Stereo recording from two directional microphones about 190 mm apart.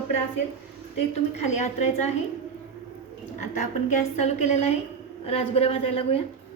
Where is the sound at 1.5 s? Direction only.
35° left (ahead or behind).